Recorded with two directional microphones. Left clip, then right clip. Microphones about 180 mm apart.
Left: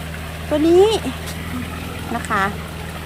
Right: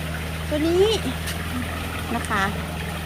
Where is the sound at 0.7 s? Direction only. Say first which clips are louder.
Left 6 dB; 15° left (ahead or behind).